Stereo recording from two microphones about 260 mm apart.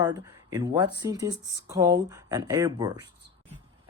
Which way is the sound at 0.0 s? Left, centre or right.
Centre.